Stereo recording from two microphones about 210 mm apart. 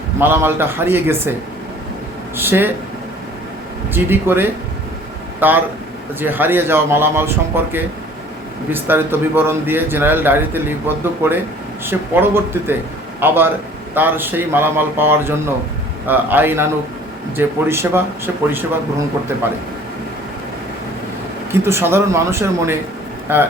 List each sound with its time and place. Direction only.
0.2 s a man's voice: 10° right (ahead or behind)
3.9 s a man's voice: 10° right (ahead or behind)
21.6 s a man's voice: 10° right (ahead or behind)